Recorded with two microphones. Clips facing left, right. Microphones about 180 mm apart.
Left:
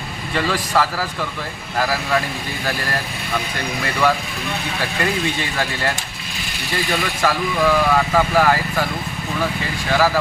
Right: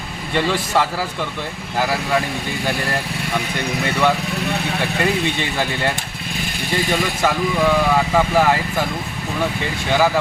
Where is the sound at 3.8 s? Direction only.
25° right (ahead or behind).